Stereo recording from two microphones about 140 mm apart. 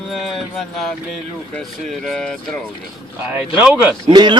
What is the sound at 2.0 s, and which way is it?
Speech, 5° left (ahead or behind).